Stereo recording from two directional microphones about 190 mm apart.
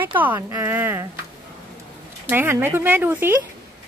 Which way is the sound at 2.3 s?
10° right (ahead or behind).